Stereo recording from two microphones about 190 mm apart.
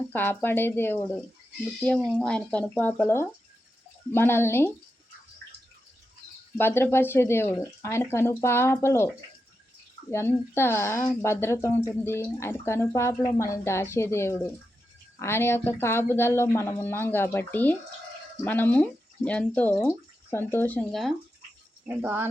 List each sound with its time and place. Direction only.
0.1 s speech: 10° left (ahead or behind)
5.4 s drip: 60° right (ahead or behind)
6.6 s speech: 10° left (ahead or behind)
10.1 s speech: 15° left (ahead or behind)
21.8 s speech: 10° right (ahead or behind)